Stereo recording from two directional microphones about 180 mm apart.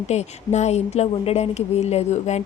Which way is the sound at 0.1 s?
40° left (ahead or behind).